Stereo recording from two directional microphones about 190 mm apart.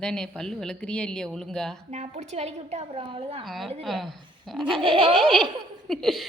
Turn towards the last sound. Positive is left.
turn(degrees=0)  # may be behind; listen again after turning